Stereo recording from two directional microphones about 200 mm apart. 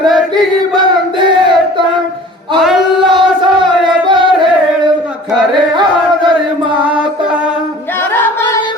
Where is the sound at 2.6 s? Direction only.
Centre (ahead or behind).